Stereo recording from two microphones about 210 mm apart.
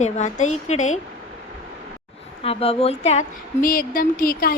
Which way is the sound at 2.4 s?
25° left (ahead or behind).